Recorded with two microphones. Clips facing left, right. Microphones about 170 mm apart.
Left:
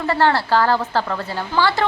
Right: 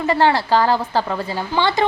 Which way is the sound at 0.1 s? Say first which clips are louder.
Right 1 dB; 15° right (ahead or behind).